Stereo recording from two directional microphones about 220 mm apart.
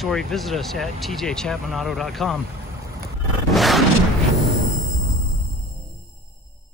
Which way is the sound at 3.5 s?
Centre (ahead or behind).